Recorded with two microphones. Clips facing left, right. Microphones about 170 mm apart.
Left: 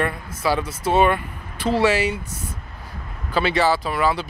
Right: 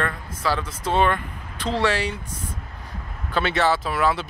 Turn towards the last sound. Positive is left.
turn(degrees=0)  # may be behind; listen again after turning